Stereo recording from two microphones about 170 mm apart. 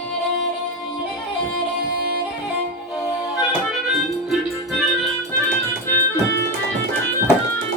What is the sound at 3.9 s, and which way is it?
Music, centre (ahead or behind).